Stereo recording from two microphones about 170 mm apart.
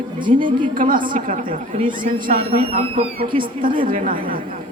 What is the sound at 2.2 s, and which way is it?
Speech, 40° right (ahead or behind).